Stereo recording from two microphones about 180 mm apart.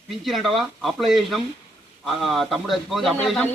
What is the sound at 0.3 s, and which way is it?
Speech, centre (ahead or behind).